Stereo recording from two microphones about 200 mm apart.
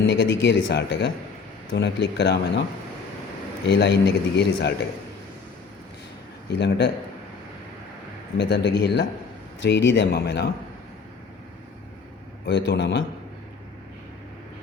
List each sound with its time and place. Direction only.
0.1 s speech: 65° left (ahead or behind)
3.7 s speech: 60° left (ahead or behind)
6.6 s speech: 55° left (ahead or behind)
8.4 s speech: 55° left (ahead or behind)
12.5 s speech: 55° left (ahead or behind)